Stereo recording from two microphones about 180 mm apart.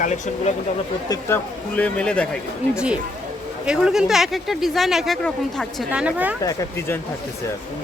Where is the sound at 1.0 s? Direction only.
20° left (ahead or behind).